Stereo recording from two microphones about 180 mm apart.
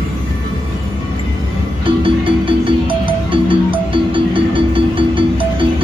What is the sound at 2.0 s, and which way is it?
Music, 30° right (ahead or behind).